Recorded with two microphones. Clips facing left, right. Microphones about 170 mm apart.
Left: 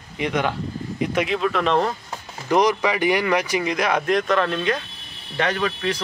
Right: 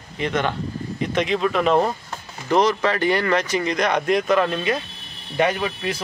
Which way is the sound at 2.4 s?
15° left (ahead or behind).